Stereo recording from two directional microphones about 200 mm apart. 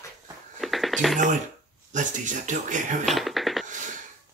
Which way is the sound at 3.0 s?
Centre (ahead or behind).